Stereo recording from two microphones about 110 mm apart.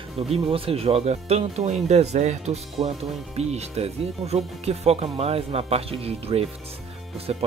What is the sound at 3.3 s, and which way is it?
Speech, 75° right (ahead or behind).